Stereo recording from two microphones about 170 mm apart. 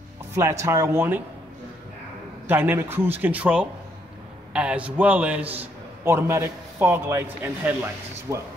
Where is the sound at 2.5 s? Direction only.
10° right (ahead or behind).